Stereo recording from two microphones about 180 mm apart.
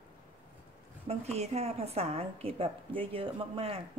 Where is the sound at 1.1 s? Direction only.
35° right (ahead or behind).